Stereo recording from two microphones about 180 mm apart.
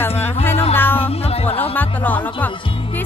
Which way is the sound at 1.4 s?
10° left (ahead or behind).